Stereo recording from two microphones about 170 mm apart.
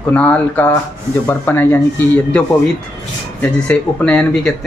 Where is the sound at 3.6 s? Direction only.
5° left (ahead or behind).